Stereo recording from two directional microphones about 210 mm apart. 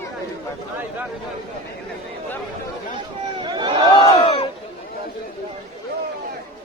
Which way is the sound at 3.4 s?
20° right (ahead or behind).